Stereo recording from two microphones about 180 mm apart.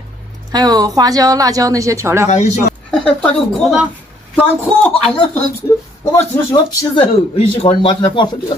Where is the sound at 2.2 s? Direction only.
40° left (ahead or behind).